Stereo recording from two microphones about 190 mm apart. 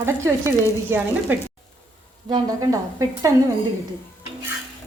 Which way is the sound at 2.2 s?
20° right (ahead or behind).